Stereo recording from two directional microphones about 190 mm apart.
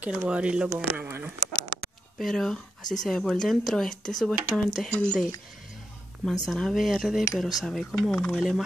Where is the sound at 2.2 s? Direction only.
Centre (ahead or behind).